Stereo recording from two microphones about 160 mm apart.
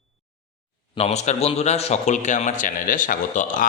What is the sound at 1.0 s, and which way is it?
A man's voice, 40° left (ahead or behind).